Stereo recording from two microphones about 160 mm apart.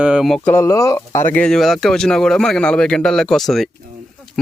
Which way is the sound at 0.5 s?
20° left (ahead or behind).